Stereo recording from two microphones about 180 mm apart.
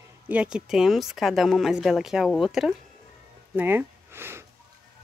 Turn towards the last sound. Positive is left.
turn(degrees=-15)  # may be behind; listen again after turning